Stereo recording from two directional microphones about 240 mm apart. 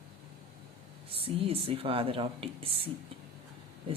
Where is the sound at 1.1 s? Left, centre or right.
Right.